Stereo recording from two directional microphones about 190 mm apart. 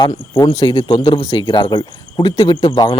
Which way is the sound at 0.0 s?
20° left (ahead or behind).